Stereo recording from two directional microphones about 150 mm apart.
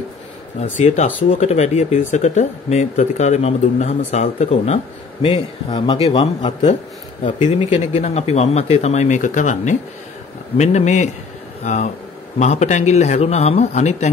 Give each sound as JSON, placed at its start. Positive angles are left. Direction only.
{"t": 0.6, "sound": "speech", "side_deg": 45}